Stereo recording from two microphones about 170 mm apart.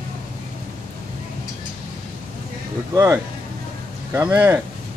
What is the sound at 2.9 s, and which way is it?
Speech, 15° right (ahead or behind).